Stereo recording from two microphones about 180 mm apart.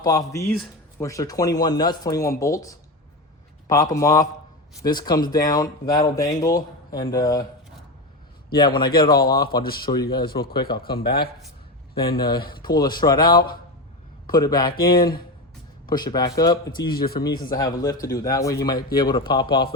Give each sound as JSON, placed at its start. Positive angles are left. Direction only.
{"t": 0.0, "sound": "speech", "side_deg": 20}
{"t": 0.5, "sound": "a sound", "side_deg": 0}
{"t": 1.0, "sound": "speech", "side_deg": 15}
{"t": 8.5, "sound": "speech", "side_deg": 25}
{"t": 9.6, "sound": "speech", "side_deg": 55}
{"t": 9.9, "sound": "speech", "side_deg": 20}
{"t": 10.9, "sound": "speech", "side_deg": 60}
{"t": 12.5, "sound": "speech", "side_deg": 25}
{"t": 15.9, "sound": "speech", "side_deg": 20}